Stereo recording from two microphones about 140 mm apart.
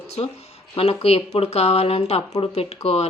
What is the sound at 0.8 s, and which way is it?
Speech, 45° left (ahead or behind).